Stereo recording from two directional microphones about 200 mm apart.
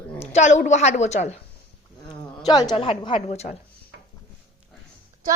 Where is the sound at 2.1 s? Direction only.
20° left (ahead or behind).